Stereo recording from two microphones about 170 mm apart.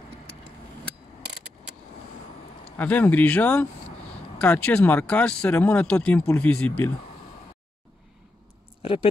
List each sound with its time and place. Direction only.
2.8 s speech: 10° left (ahead or behind)
8.8 s speech: 35° left (ahead or behind)